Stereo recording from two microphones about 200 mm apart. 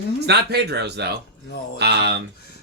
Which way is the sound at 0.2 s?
55° right (ahead or behind).